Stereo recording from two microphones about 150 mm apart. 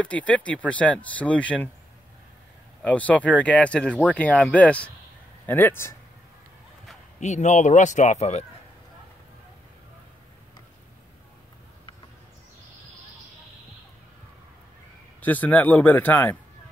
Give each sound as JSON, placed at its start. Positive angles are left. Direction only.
{"t": 0.0, "sound": "speech", "side_deg": 10}
{"t": 2.8, "sound": "speech", "side_deg": 10}
{"t": 7.2, "sound": "speech", "side_deg": 50}
{"t": 15.2, "sound": "speech", "side_deg": 10}